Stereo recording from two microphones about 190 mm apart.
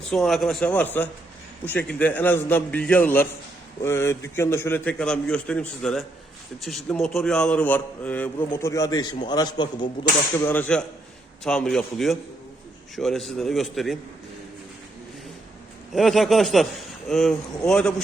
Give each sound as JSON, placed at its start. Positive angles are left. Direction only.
{"t": 0.1, "sound": "a man's voice", "side_deg": 0}
{"t": 10.4, "sound": "a man's voice", "side_deg": 10}
{"t": 16.0, "sound": "a man's voice", "side_deg": 0}